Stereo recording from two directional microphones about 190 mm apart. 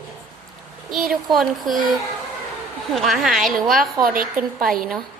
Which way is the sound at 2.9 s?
Centre (ahead or behind).